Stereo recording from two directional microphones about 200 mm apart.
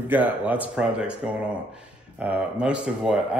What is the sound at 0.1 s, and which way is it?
A man's voice, 10° right (ahead or behind).